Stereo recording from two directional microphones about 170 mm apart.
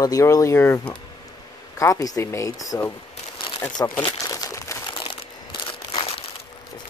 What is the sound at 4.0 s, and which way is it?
Crumpling, 20° left (ahead or behind).